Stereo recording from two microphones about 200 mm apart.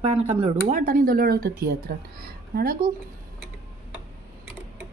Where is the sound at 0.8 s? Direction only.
45° right (ahead or behind).